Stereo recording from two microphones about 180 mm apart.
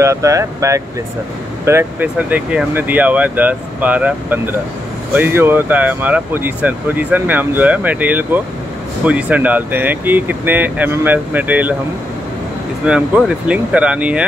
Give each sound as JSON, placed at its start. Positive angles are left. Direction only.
{"t": 0.0, "sound": "speech", "side_deg": -15}
{"t": 12.8, "sound": "speech", "side_deg": -5}